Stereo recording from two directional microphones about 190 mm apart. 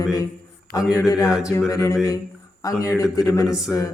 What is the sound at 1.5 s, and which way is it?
A man's voice, 15° left (ahead or behind).